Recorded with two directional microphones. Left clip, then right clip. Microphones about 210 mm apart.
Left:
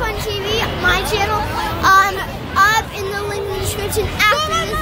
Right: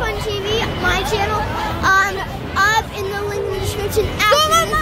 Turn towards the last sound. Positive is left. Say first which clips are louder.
# right 4 dB
turn(degrees=-40)  # may be behind; listen again after turning